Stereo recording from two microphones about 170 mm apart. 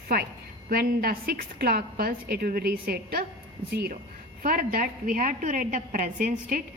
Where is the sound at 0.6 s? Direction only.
60° right (ahead or behind).